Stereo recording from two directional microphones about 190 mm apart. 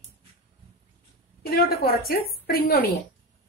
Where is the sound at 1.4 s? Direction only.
55° left (ahead or behind).